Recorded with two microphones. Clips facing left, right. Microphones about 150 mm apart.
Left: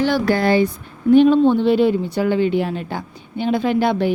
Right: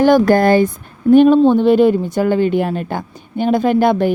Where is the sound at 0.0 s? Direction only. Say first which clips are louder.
Right 7 dB; 50° right (ahead or behind).